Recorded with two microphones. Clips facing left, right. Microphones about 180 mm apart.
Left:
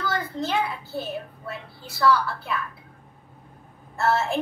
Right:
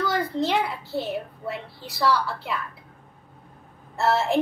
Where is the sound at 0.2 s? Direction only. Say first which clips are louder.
Right 3 dB; 15° right (ahead or behind).